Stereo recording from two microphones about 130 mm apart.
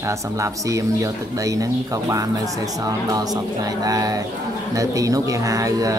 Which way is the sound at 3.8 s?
30° right (ahead or behind).